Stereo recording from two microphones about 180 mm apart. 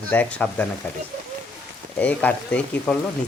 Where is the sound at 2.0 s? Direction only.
10° left (ahead or behind).